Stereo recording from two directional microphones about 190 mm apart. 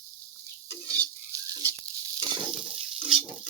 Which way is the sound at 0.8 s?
20° right (ahead or behind).